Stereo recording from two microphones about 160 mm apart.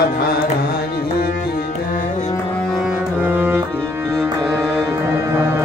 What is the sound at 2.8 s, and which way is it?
Music, 10° right (ahead or behind).